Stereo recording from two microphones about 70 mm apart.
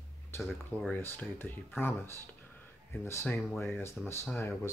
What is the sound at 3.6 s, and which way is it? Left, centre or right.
Speech, left.